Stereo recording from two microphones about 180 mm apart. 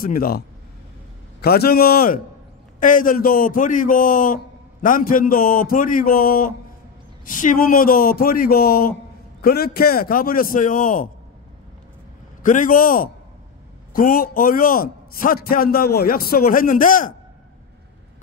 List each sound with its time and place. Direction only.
0.0 s a man's voice: 55° left (ahead or behind)
1.4 s a man's voice: 60° left (ahead or behind)
12.4 s a man's voice: 45° left (ahead or behind)